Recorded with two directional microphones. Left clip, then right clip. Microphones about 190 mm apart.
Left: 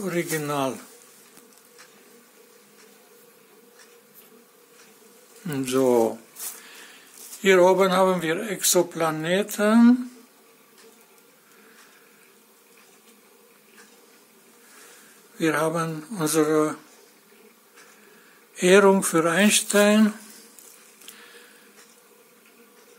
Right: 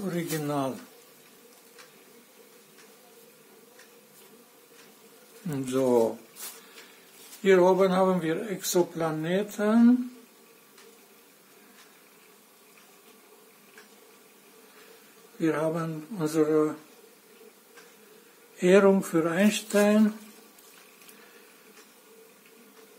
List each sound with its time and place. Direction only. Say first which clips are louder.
0.0 s a man's voice: left 5 dB; 15° left (ahead or behind)
5.5 s a man's voice: left 4 dB; 15° left (ahead or behind)
7.4 s speech: left 4 dB; 15° left (ahead or behind)
15.3 s speech: left 4 dB; 20° left (ahead or behind)
18.6 s speech: left 4 dB; 20° left (ahead or behind)